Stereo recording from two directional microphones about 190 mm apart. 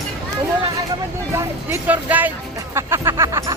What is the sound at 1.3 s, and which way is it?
Speech, 10° right (ahead or behind).